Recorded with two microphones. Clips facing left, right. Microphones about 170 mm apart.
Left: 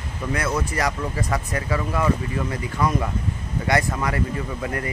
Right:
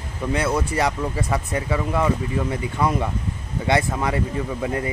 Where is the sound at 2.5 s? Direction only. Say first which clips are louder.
Even; 25° right (ahead or behind).